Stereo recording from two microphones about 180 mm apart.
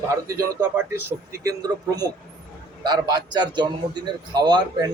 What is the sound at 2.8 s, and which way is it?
A man's voice, 25° right (ahead or behind).